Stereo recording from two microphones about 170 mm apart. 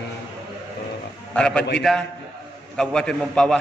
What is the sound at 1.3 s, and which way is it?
A man's voice, 5° left (ahead or behind).